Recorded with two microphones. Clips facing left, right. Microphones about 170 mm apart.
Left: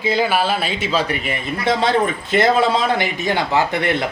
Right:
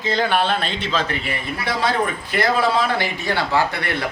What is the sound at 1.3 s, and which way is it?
A man's voice, 20° left (ahead or behind).